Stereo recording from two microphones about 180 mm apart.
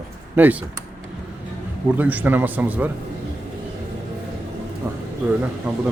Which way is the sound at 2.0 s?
10° right (ahead or behind).